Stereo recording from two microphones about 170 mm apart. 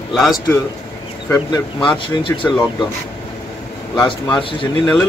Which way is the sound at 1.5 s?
25° left (ahead or behind).